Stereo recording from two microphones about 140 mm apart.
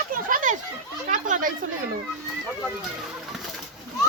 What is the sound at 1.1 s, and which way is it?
Speech, 65° right (ahead or behind).